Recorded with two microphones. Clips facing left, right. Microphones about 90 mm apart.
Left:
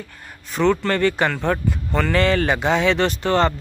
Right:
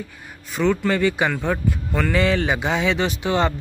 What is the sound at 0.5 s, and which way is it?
A man's voice, 5° right (ahead or behind).